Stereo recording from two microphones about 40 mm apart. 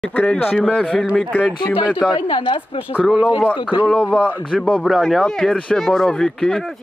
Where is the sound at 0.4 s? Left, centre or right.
Left.